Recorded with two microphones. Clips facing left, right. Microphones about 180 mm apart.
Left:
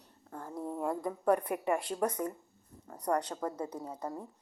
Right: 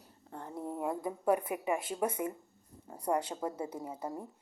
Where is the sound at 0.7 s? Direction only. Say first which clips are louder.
Left 1 dB; 5° right (ahead or behind).